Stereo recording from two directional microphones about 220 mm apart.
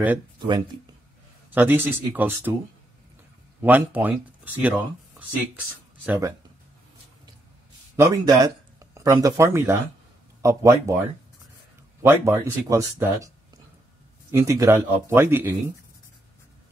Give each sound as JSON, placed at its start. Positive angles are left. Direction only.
{"t": 0.4, "sound": "speech", "side_deg": -20}
{"t": 1.5, "sound": "speech", "side_deg": -10}
{"t": 3.6, "sound": "speech", "side_deg": -10}
{"t": 6.0, "sound": "speech", "side_deg": -10}
{"t": 7.9, "sound": "speech", "side_deg": -15}
{"t": 12.0, "sound": "speech", "side_deg": -10}
{"t": 14.3, "sound": "speech", "side_deg": -15}